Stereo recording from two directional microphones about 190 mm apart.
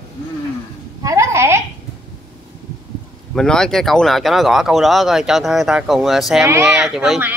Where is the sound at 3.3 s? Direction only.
5° left (ahead or behind).